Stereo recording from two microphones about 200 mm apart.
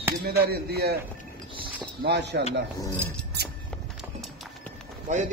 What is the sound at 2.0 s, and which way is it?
Speech, 60° right (ahead or behind).